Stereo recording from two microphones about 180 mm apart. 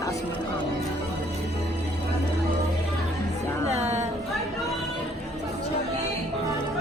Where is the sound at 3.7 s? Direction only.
40° right (ahead or behind).